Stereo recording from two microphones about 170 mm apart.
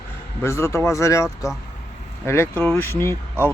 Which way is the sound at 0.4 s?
15° left (ahead or behind).